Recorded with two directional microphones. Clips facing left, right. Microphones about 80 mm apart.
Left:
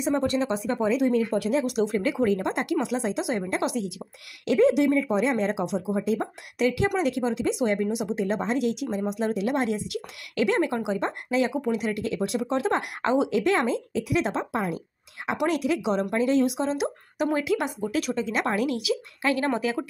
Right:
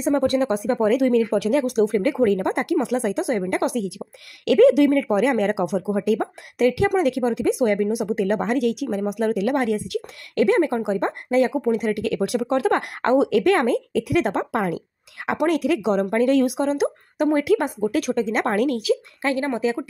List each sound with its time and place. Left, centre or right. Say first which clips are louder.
0.0 s speech: right 5 dB; right
0.8 s speech: right 4 dB; right
1.7 s speech: right 5 dB; right
4.5 s speech: right 6 dB; right
6.6 s speech: right 5 dB; right
8.2 s speech: right 4 dB; right
12.0 s speech: right 5 dB; right
15.4 s speech: right 5 dB; right